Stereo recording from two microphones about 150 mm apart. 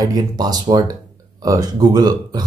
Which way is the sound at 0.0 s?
25° right (ahead or behind).